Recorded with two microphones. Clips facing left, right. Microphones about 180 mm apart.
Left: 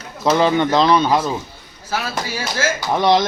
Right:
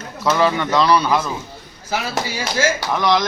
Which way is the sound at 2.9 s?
30° left (ahead or behind).